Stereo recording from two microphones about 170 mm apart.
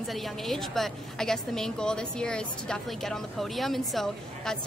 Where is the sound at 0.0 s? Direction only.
Centre (ahead or behind).